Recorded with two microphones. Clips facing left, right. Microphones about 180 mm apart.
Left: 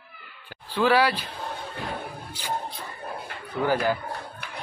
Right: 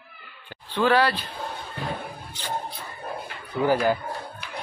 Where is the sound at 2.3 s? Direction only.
10° left (ahead or behind).